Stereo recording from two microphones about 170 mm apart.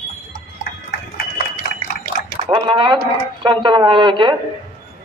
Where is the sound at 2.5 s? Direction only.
30° right (ahead or behind).